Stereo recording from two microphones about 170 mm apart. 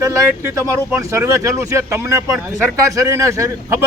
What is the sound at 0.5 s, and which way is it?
A man's voice, 15° right (ahead or behind).